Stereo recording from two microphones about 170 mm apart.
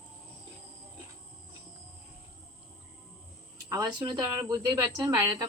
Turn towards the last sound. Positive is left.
turn(degrees=-20)  # may be behind; listen again after turning